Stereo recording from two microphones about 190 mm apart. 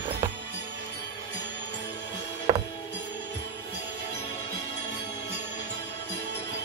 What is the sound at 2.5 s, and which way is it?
Music, 20° right (ahead or behind).